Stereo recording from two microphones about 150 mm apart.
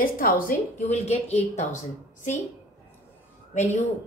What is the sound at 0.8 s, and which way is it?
Speech, 45° left (ahead or behind).